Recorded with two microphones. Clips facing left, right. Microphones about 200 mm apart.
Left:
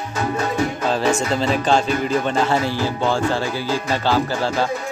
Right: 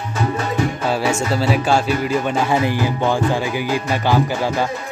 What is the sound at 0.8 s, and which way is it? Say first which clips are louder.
Speech: left 1 dB; 10° right (ahead or behind).